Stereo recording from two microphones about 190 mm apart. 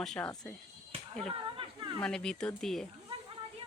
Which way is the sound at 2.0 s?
5° left (ahead or behind).